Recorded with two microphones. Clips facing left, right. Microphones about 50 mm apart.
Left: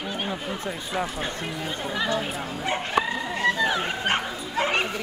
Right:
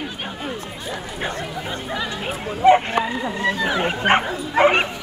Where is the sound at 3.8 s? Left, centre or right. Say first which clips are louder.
Right 7 dB; right.